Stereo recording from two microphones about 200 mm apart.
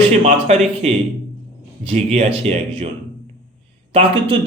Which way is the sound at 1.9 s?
35° right (ahead or behind).